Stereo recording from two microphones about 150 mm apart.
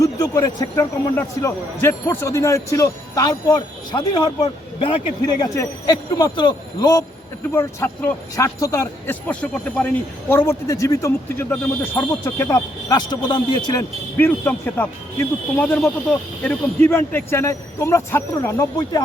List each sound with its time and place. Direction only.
0.0 s a man's voice: 25° left (ahead or behind)
9.2 s speech: 10° left (ahead or behind)
12.9 s a man's voice: 30° left (ahead or behind)
14.2 s speech: 10° left (ahead or behind)